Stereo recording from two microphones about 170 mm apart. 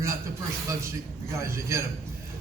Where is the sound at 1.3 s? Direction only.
15° right (ahead or behind).